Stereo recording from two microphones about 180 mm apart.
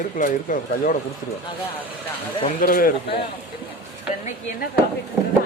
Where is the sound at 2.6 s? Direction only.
50° left (ahead or behind).